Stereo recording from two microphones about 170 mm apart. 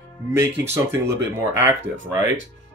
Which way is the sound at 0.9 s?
15° right (ahead or behind).